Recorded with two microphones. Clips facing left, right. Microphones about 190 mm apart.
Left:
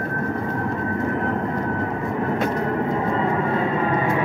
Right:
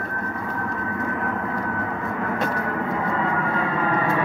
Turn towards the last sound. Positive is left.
turn(degrees=20)  # may be behind; listen again after turning